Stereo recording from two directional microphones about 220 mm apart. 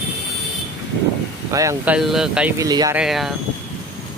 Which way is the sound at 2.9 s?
Centre (ahead or behind).